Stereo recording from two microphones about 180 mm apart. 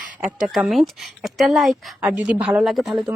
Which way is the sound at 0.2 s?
5° right (ahead or behind).